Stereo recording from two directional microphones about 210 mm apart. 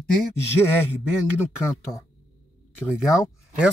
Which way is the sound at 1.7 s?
15° left (ahead or behind).